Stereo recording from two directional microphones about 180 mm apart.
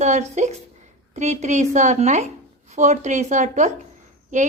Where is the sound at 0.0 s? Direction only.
40° right (ahead or behind).